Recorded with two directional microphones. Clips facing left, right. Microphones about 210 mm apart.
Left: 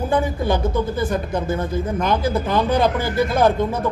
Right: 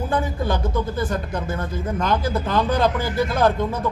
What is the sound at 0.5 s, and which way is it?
Speech, 10° left (ahead or behind).